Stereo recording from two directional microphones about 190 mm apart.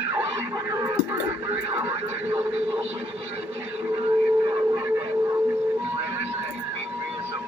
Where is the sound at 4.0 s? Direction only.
25° right (ahead or behind).